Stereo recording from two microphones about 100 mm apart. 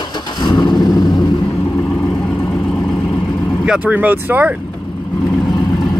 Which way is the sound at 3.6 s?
15° right (ahead or behind).